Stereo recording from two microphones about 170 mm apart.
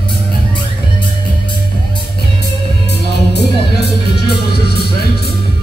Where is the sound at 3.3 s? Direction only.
75° left (ahead or behind).